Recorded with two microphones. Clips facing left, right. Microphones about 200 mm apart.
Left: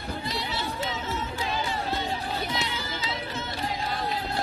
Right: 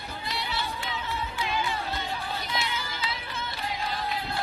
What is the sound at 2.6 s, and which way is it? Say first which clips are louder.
Music: left 1 dB; 40° left (ahead or behind).